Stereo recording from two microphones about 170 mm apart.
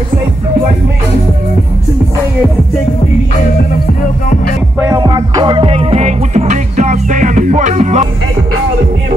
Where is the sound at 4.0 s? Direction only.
55° left (ahead or behind).